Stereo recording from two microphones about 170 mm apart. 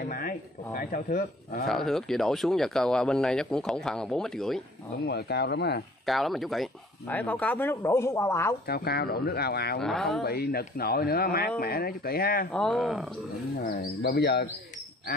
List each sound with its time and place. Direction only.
0.0 s a sound: 55° left (ahead or behind)
0.7 s speech: 55° left (ahead or behind)
1.7 s a man's voice: centre (ahead or behind)
5.0 s speech: 75° left (ahead or behind)
6.0 s speech: centre (ahead or behind); by 8.5 s 15° left (ahead or behind)
8.6 s speech: 70° left (ahead or behind)
9.8 s a man's voice: centre (ahead or behind)
10.2 s speech: 65° left (ahead or behind)
12.5 s a man's voice: 5° left (ahead or behind)
13.7 s speech: 65° left (ahead or behind)